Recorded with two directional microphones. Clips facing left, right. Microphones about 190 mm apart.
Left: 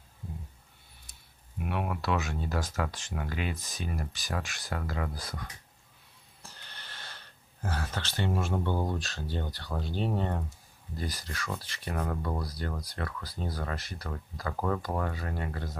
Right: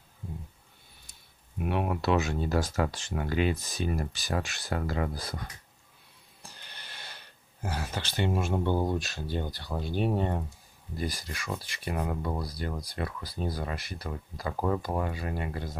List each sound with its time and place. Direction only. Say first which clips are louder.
1.7 s speech: right 4 dB; 25° right (ahead or behind)
6.4 s speech: right 1 dB; 15° right (ahead or behind)